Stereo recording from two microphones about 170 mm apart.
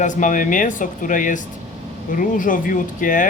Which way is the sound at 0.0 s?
50° left (ahead or behind).